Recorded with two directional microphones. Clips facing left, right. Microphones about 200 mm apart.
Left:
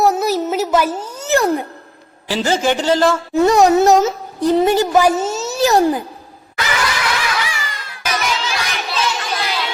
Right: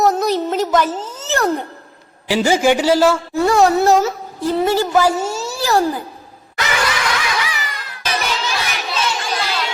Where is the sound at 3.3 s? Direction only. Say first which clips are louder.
Left 6 dB; 20° left (ahead or behind).